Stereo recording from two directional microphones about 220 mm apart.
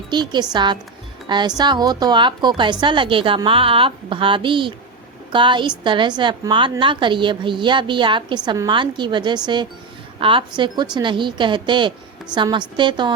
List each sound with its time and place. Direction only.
0.1 s a woman's voice: 20° right (ahead or behind)